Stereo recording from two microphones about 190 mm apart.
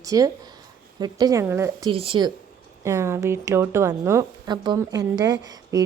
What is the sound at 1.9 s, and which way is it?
Speech, 30° right (ahead or behind).